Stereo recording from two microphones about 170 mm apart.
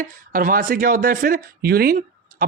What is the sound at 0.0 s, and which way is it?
Speech, 55° right (ahead or behind).